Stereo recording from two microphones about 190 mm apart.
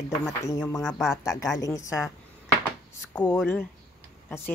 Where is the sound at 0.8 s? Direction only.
Centre (ahead or behind).